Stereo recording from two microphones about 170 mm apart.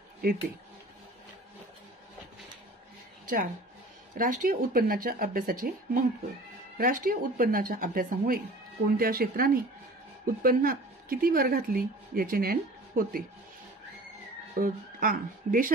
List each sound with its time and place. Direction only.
4.2 s a woman's voice: 55° right (ahead or behind)
14.5 s speech: 55° right (ahead or behind)